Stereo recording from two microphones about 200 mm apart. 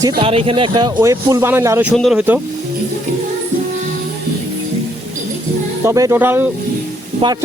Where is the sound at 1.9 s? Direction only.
Centre (ahead or behind).